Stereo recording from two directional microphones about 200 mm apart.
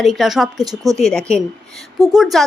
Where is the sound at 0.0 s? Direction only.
Centre (ahead or behind).